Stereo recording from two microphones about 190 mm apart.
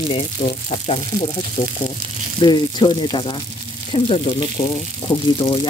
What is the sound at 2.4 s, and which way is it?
Speech, 25° left (ahead or behind).